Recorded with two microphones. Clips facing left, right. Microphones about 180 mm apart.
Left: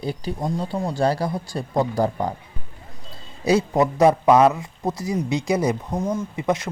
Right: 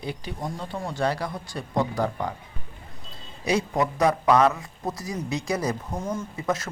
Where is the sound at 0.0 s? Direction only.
35° left (ahead or behind).